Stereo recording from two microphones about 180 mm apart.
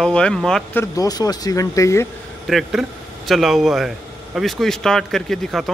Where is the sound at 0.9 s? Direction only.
20° left (ahead or behind).